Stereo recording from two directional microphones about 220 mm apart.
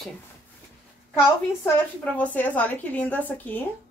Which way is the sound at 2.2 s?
5° left (ahead or behind).